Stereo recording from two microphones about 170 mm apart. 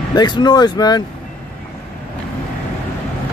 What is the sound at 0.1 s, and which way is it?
Speech, 25° left (ahead or behind).